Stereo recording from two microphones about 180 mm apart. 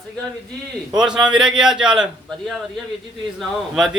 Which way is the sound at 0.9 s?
5° right (ahead or behind).